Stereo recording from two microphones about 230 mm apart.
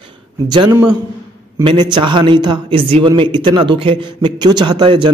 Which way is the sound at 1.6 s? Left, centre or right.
Right.